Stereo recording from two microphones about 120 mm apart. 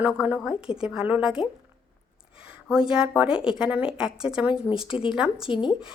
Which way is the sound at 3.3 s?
45° left (ahead or behind).